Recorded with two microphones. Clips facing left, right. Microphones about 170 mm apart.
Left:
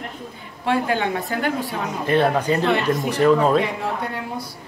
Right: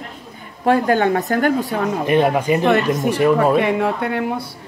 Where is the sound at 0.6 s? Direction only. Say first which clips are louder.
Right 6 dB; 45° right (ahead or behind).